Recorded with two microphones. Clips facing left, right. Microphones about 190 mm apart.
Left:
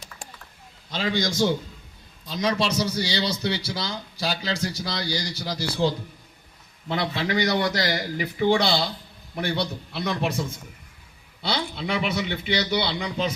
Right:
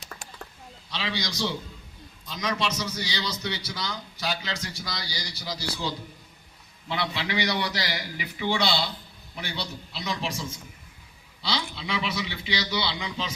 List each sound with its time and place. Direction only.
0.9 s a man's voice: 50° left (ahead or behind)
2.2 s a man's voice: 30° left (ahead or behind)
4.9 s a man's voice: 55° left (ahead or behind)
11.4 s a man's voice: 50° left (ahead or behind)